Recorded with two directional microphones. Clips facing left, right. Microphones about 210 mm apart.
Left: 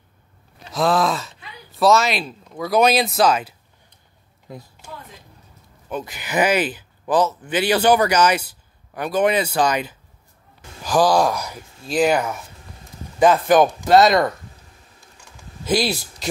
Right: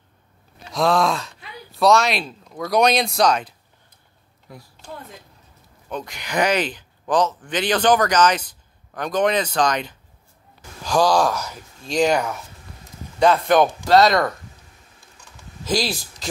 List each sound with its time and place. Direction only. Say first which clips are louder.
0.7 s speech: even; centre (ahead or behind)
4.5 s speech: left 5 dB; 20° left (ahead or behind)
5.9 s speech: left 2 dB; 5° left (ahead or behind)